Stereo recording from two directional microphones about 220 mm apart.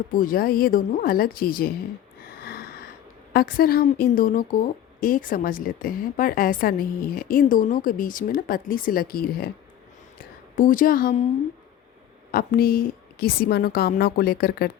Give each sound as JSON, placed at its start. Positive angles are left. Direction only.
{"t": 0.1, "sound": "a woman's voice", "side_deg": 40}
{"t": 2.4, "sound": "a sound", "side_deg": 45}
{"t": 3.3, "sound": "a woman's voice", "side_deg": 40}
{"t": 10.5, "sound": "a woman's voice", "side_deg": 35}
{"t": 12.3, "sound": "a woman's voice", "side_deg": 40}